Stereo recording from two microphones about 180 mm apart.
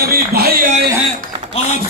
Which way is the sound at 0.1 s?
60° right (ahead or behind).